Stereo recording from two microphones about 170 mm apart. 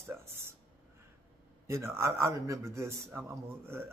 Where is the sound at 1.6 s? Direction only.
15° right (ahead or behind).